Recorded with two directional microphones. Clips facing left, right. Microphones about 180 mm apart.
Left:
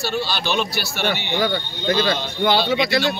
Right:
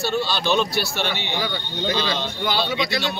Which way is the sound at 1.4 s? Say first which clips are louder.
Left 6 dB; 55° left (ahead or behind).